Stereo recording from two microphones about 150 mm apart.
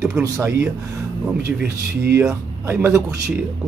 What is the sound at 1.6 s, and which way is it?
Speech, 90° right.